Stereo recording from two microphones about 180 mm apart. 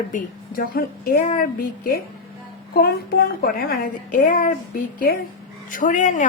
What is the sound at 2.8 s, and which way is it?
A child's voice, 55° left (ahead or behind).